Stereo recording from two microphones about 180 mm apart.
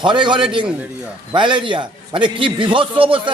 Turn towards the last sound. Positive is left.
turn(degrees=-30)  # may be behind; listen again after turning